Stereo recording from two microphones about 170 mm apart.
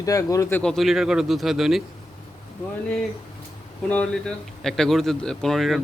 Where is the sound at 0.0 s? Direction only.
20° left (ahead or behind).